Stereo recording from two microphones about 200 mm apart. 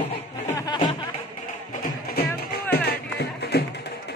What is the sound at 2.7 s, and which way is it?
Music, 55° left (ahead or behind).